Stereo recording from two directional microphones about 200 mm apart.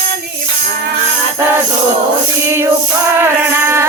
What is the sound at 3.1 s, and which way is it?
Music, 10° right (ahead or behind).